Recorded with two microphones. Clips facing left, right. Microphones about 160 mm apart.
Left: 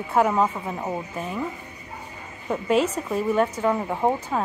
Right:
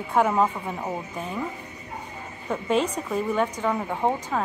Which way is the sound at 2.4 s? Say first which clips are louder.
Left 2 dB; 5° left (ahead or behind).